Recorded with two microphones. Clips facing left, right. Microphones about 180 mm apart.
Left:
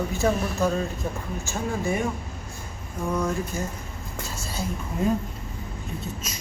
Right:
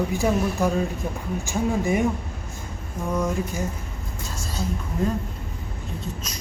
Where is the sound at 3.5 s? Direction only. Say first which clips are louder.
Right 2 dB; 15° right (ahead or behind).